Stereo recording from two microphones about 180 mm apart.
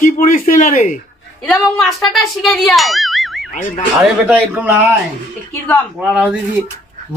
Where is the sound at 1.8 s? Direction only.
Centre (ahead or behind).